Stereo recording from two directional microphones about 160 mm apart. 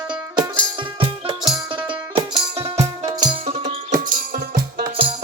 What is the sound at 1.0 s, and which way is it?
Music, 25° right (ahead or behind).